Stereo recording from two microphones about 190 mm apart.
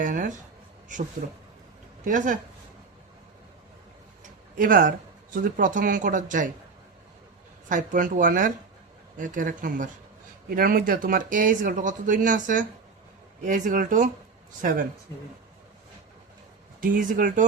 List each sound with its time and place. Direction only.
0.0 s speech: 45° right (ahead or behind)
2.0 s speech: 40° right (ahead or behind)
4.2 s speech: 45° right (ahead or behind)
7.7 s speech: 45° right (ahead or behind)
16.8 s speech: 45° right (ahead or behind)